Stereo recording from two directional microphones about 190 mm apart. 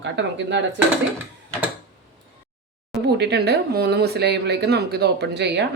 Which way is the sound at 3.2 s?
60° right (ahead or behind).